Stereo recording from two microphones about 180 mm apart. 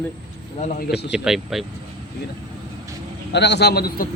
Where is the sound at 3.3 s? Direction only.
70° left (ahead or behind).